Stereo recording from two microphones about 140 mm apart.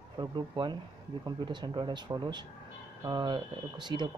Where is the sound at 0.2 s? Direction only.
30° right (ahead or behind).